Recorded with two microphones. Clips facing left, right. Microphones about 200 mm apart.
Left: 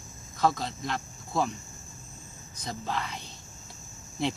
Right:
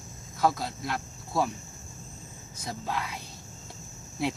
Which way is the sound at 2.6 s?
5° right (ahead or behind).